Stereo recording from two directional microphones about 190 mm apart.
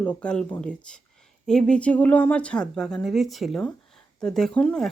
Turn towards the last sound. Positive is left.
turn(degrees=5)  # may be behind; listen again after turning